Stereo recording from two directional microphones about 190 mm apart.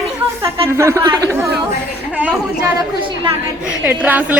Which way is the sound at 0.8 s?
15° right (ahead or behind).